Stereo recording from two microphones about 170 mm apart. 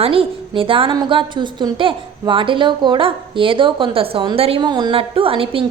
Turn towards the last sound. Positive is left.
turn(degrees=-30)  # may be behind; listen again after turning